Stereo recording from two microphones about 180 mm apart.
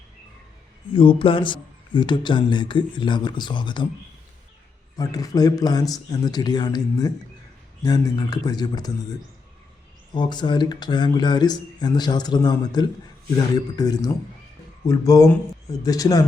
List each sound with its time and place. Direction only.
0.9 s speech: 30° left (ahead or behind)
4.9 s speech: 20° left (ahead or behind)
10.2 s speech: 25° left (ahead or behind)